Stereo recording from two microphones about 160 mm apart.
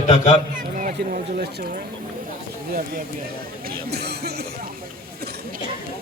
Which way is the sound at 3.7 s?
90° right.